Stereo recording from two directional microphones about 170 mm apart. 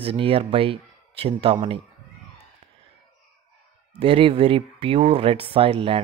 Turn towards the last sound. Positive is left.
turn(degrees=-35)  # may be behind; listen again after turning